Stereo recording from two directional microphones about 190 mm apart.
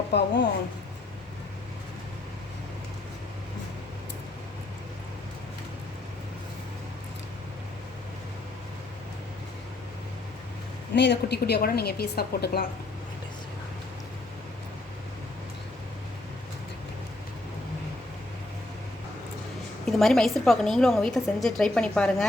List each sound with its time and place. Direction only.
0.1 s a woman's voice: 65° left (ahead or behind)
10.9 s a woman's voice: 65° left (ahead or behind)
19.8 s a woman's voice: centre (ahead or behind)